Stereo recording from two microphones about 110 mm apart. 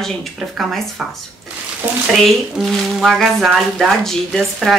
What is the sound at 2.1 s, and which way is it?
Speech, centre (ahead or behind).